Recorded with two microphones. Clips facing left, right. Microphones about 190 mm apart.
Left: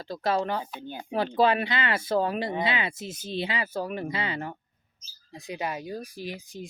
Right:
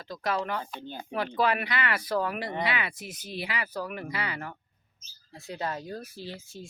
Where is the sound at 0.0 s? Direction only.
30° left (ahead or behind).